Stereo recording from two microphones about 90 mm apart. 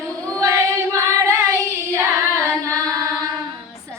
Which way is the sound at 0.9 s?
30° right (ahead or behind).